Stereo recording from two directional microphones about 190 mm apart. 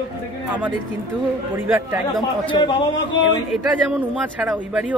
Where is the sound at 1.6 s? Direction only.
10° right (ahead or behind).